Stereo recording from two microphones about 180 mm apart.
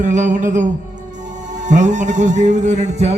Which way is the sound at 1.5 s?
45° right (ahead or behind).